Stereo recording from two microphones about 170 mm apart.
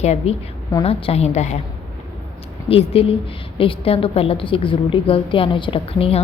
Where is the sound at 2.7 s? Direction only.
35° left (ahead or behind).